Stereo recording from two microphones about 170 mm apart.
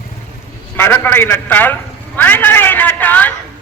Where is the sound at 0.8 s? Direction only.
10° left (ahead or behind).